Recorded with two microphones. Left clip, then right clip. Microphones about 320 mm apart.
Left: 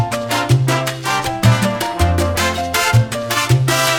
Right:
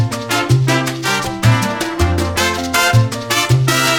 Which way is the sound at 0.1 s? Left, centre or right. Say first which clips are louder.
Even; centre.